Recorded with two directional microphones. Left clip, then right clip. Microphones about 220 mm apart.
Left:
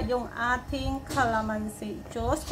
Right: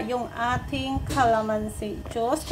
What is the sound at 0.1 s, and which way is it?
A woman's voice, 10° right (ahead or behind).